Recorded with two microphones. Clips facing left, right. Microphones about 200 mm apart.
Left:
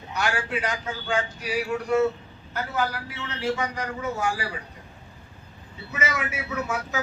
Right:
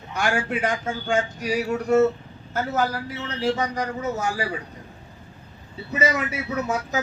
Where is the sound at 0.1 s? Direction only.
50° right (ahead or behind).